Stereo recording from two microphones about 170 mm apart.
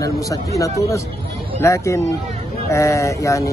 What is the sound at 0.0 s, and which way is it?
Speech, 20° left (ahead or behind).